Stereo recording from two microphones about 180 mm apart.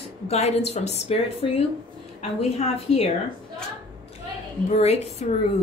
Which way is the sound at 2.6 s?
35° left (ahead or behind).